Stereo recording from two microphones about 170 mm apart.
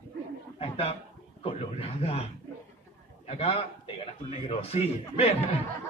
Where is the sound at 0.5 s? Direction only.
35° left (ahead or behind).